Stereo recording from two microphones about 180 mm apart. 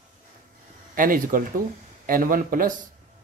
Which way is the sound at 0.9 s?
50° right (ahead or behind).